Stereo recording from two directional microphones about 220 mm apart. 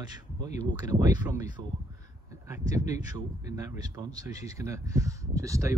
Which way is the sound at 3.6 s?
15° right (ahead or behind).